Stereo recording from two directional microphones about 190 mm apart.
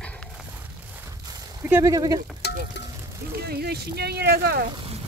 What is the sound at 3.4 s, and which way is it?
Speech, 55° right (ahead or behind).